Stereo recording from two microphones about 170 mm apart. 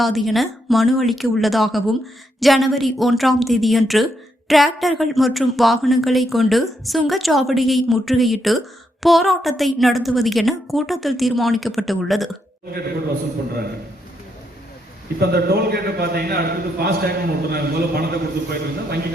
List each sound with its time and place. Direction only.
0.0 s speech: centre (ahead or behind)
15.2 s a man's voice: 70° right (ahead or behind)